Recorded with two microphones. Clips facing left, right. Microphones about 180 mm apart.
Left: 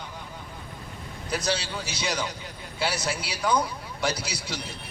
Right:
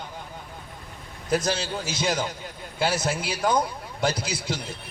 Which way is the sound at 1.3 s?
50° right (ahead or behind).